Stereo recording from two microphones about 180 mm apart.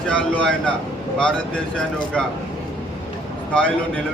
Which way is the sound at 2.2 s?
5° left (ahead or behind).